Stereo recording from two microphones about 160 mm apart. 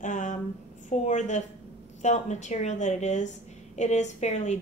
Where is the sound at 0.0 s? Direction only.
50° left (ahead or behind).